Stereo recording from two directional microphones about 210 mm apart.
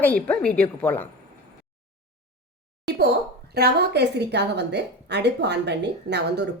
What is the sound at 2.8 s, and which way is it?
A woman's voice, 50° right (ahead or behind).